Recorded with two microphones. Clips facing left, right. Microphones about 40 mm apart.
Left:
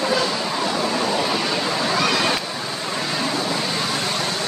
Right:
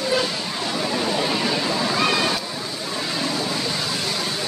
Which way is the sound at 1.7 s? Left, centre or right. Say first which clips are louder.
Left 1 dB; centre.